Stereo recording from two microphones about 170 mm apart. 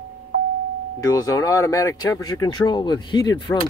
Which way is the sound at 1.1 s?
20° left (ahead or behind).